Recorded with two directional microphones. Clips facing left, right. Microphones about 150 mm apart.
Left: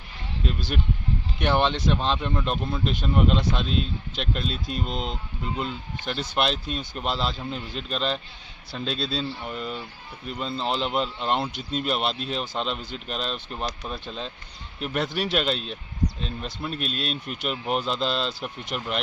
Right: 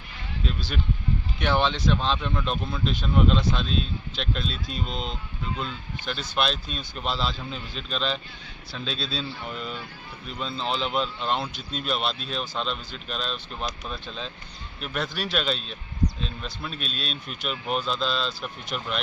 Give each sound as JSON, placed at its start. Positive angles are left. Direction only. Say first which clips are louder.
{"t": 0.4, "sound": "a sound", "louder": "left 3 dB", "side_deg": 10}
{"t": 1.4, "sound": "speech", "louder": "left 2 dB", "side_deg": 15}
{"t": 3.7, "sound": "speech", "louder": "left 1 dB", "side_deg": 60}
{"t": 4.2, "sound": "speech", "louder": "left 2 dB", "side_deg": 10}
{"t": 6.1, "sound": "speech", "louder": "left 2 dB", "side_deg": 20}
{"t": 16.7, "sound": "speech", "louder": "left 4 dB", "side_deg": 60}
{"t": 17.4, "sound": "speech", "louder": "left 1 dB", "side_deg": 20}